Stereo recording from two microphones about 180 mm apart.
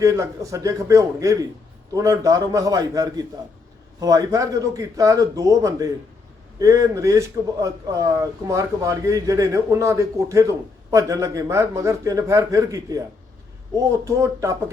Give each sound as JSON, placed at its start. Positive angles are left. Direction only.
{"t": 0.0, "sound": "a man's voice", "side_deg": -15}